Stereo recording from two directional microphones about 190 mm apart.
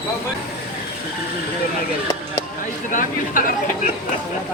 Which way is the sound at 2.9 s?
45° left (ahead or behind).